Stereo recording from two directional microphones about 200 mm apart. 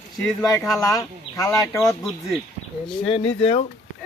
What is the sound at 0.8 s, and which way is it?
Speech, 15° left (ahead or behind).